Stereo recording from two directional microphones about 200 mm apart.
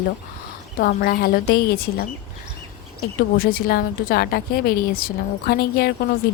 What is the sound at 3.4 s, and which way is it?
A woman's voice, 45° left (ahead or behind).